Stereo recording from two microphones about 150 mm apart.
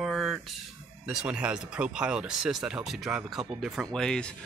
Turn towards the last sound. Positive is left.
turn(degrees=5)  # may be behind; listen again after turning